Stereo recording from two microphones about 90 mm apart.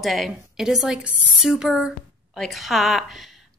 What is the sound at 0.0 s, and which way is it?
A woman's voice, centre (ahead or behind).